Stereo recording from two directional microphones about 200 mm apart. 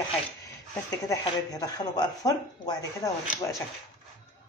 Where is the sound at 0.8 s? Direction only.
15° left (ahead or behind).